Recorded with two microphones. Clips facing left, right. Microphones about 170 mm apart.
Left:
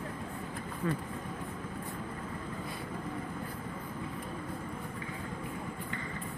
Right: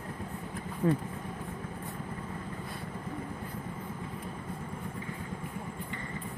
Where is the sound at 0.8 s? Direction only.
35° right (ahead or behind).